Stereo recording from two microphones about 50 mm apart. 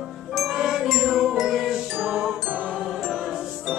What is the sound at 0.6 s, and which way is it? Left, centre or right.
Wind chime, centre.